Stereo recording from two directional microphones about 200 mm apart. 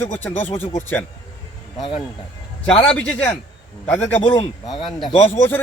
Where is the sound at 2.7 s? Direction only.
25° left (ahead or behind).